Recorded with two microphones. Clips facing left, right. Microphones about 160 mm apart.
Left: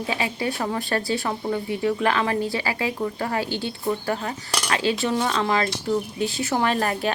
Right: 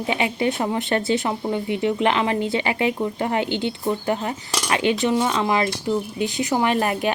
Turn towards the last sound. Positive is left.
turn(degrees=-15)  # may be behind; listen again after turning